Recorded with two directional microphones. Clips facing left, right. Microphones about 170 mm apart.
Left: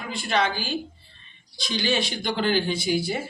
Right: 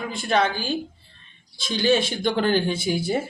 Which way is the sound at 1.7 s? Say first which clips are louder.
Right 5 dB; 50° right (ahead or behind).